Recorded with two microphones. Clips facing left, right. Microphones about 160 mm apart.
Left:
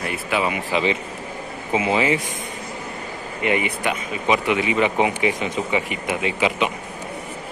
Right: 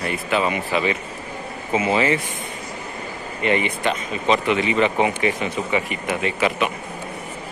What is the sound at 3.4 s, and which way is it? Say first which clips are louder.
Speech: right 1 dB; 10° left (ahead or behind).